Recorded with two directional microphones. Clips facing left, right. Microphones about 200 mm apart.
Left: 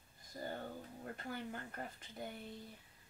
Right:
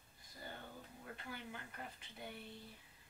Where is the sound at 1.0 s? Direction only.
45° left (ahead or behind).